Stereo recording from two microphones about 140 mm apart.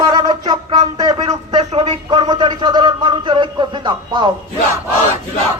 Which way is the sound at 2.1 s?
30° right (ahead or behind).